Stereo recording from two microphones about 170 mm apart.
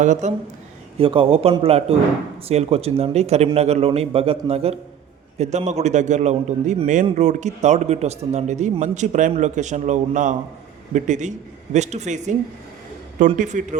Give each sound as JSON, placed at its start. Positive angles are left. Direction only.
{"t": 0.0, "sound": "a man's voice", "side_deg": -45}
{"t": 0.9, "sound": "a man's voice", "side_deg": -30}